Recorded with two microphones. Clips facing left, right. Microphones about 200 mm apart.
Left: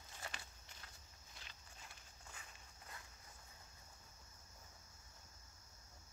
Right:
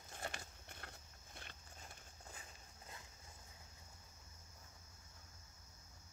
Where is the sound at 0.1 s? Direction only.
50° right (ahead or behind).